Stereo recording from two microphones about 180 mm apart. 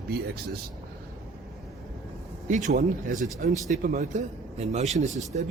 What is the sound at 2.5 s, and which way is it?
Speech, 45° right (ahead or behind).